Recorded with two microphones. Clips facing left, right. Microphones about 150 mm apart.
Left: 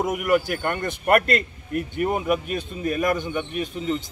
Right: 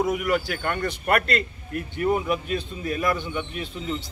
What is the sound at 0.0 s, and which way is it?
Speech, 50° left (ahead or behind).